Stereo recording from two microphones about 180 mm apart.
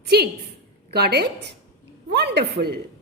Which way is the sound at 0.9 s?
65° right (ahead or behind).